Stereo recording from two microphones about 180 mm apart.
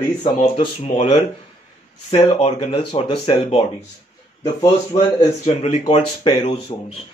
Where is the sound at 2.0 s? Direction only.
35° left (ahead or behind).